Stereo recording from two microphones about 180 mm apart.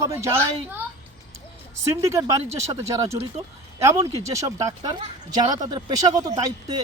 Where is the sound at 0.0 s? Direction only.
15° right (ahead or behind).